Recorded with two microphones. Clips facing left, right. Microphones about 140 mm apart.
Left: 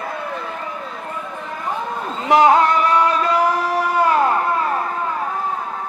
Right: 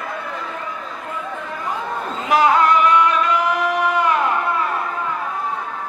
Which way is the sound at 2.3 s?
25° left (ahead or behind).